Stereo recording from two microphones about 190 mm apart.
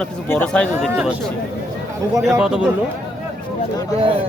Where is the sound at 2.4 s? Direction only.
5° right (ahead or behind).